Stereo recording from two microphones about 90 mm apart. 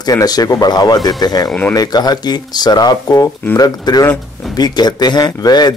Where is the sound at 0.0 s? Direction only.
45° left (ahead or behind).